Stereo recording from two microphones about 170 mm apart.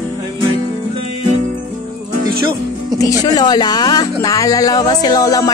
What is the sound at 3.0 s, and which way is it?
Speech, 20° left (ahead or behind).